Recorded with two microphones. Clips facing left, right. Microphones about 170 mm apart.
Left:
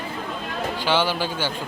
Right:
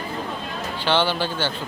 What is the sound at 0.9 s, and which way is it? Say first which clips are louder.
Speech: right 2 dB; 10° left (ahead or behind).